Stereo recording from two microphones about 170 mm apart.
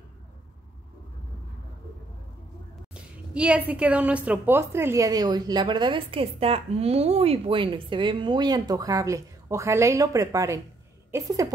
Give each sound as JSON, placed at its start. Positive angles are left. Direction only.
{"t": 2.9, "sound": "a woman's voice", "side_deg": -5}